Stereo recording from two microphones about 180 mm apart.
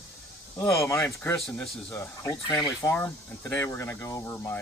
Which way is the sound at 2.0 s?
20° left (ahead or behind).